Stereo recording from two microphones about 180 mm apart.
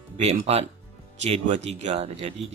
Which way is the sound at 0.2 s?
35° right (ahead or behind).